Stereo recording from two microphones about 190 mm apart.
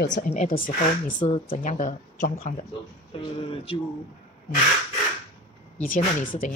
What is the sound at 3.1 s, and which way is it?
Speech, 30° left (ahead or behind).